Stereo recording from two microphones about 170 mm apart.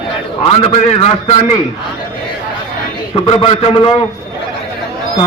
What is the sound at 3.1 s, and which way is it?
Speech, 30° left (ahead or behind).